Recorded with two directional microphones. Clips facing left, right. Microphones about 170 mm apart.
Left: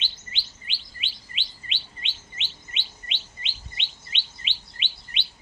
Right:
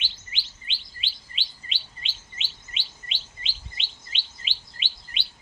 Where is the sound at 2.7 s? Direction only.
35° right (ahead or behind).